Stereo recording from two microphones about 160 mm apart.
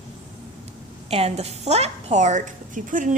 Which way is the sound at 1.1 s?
40° right (ahead or behind).